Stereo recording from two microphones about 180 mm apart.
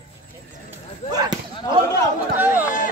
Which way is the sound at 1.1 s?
20° right (ahead or behind).